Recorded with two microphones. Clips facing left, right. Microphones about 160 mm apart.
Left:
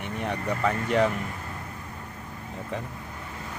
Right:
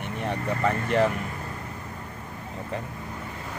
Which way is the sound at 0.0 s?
Centre (ahead or behind).